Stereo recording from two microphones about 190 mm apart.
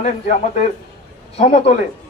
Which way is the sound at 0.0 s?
40° left (ahead or behind).